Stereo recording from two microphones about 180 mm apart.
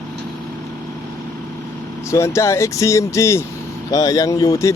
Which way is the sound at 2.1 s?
15° left (ahead or behind).